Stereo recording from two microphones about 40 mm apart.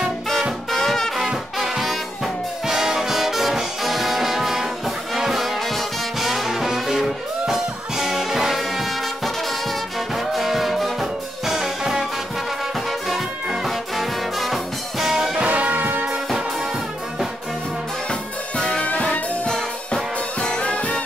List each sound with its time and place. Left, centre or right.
0.7 s brass instrument: centre
2.6 s brass instrument: centre
7.4 s music: centre
13.7 s music: centre
15.3 s music: right
18.6 s music: left
18.9 s music: left
19.4 s music: left